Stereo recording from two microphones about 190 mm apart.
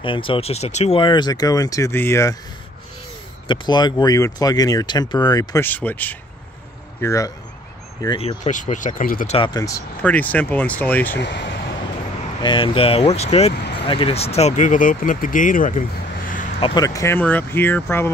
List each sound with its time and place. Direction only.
0.0 s speech: 25° left (ahead or behind)
3.4 s speech: 20° left (ahead or behind)
8.5 s speech: 40° left (ahead or behind)
9.3 s speech: 25° left (ahead or behind); by 11.1 s 10° left (ahead or behind)
11.1 s speech: 65° left (ahead or behind)
12.4 s speech: 25° left (ahead or behind); by 15.8 s 45° left (ahead or behind)
16.5 s speech: 30° left (ahead or behind)
16.8 s speech: 15° left (ahead or behind)